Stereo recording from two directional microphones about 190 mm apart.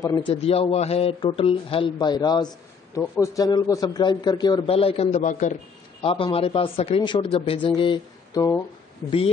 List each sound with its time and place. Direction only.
0.3 s speech: 30° left (ahead or behind)
6.0 s speech: 30° left (ahead or behind)